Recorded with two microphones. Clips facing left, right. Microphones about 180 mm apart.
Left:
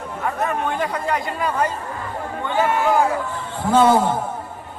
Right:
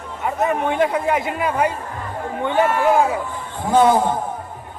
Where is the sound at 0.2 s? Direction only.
20° right (ahead or behind).